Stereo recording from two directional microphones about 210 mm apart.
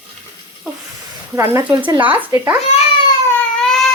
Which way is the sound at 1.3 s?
10° right (ahead or behind).